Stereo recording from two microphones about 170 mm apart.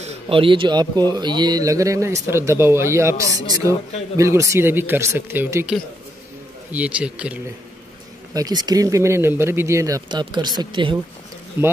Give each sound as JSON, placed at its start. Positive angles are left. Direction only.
{"t": 0.0, "sound": "speech", "side_deg": -30}
{"t": 8.3, "sound": "speech", "side_deg": -20}
{"t": 11.6, "sound": "speech", "side_deg": -10}